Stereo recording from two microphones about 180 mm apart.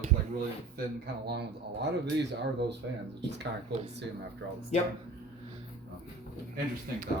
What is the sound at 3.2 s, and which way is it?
Speech, 75° right (ahead or behind).